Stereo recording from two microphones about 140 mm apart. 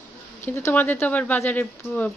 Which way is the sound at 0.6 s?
20° left (ahead or behind).